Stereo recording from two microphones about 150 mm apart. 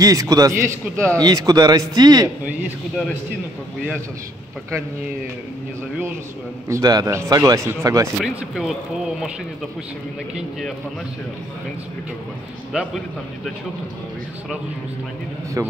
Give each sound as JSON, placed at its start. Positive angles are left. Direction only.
{"t": 0.0, "sound": "a man's voice", "side_deg": -25}
{"t": 6.7, "sound": "a man's voice", "side_deg": -25}
{"t": 8.2, "sound": "speech", "side_deg": 0}